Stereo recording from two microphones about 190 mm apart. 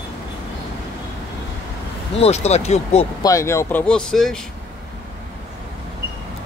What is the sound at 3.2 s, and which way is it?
Speech, 15° left (ahead or behind).